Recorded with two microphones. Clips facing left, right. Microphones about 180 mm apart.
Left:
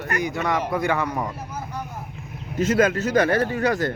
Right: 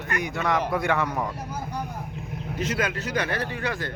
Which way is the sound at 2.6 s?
45° left (ahead or behind).